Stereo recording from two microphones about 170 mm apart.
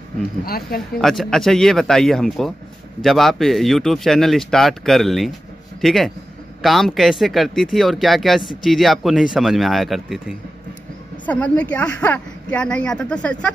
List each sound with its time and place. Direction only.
0.5 s speech: 60° left (ahead or behind)
1.0 s speech: centre (ahead or behind)
11.2 s a woman's voice: 10° left (ahead or behind)